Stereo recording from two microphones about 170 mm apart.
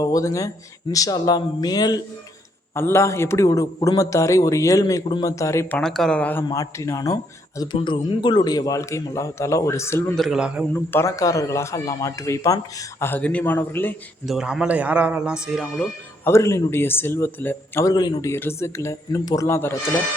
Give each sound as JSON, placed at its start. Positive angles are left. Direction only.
{"t": 0.0, "sound": "a man's voice", "side_deg": 20}
{"t": 5.8, "sound": "a man's voice", "side_deg": 0}
{"t": 10.2, "sound": "a man's voice", "side_deg": 0}
{"t": 10.8, "sound": "a man's voice", "side_deg": 15}
{"t": 14.3, "sound": "a man's voice", "side_deg": -5}
{"t": 16.2, "sound": "a man's voice", "side_deg": 15}